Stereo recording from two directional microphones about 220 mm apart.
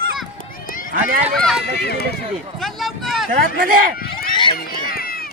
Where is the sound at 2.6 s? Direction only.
Centre (ahead or behind).